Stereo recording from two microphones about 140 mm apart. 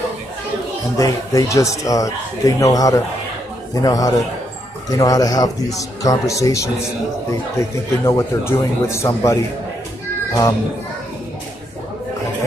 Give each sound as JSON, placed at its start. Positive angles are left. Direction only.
{"t": 0.9, "sound": "speech", "side_deg": 25}